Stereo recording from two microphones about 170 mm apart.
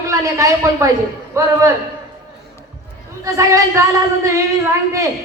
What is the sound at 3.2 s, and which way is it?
A man's voice, 20° right (ahead or behind).